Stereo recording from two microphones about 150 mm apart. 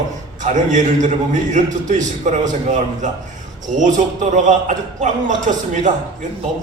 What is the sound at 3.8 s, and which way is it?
A man's voice, 55° right (ahead or behind).